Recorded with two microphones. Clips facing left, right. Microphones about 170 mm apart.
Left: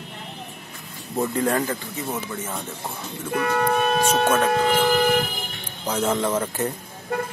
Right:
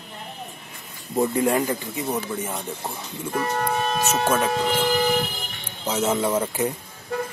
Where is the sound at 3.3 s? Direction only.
60° left (ahead or behind).